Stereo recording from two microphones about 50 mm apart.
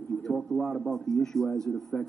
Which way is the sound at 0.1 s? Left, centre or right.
Centre.